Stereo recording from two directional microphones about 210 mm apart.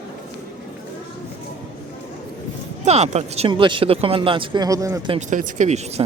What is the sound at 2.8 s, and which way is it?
Speech, 30° right (ahead or behind).